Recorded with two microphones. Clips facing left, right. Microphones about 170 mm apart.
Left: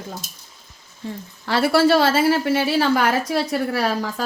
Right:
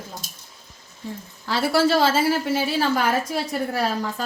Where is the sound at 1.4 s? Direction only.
65° left (ahead or behind).